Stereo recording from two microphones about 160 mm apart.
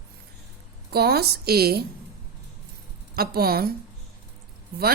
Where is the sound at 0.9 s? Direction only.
80° right.